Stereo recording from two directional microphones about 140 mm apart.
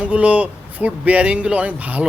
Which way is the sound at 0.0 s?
10° right (ahead or behind).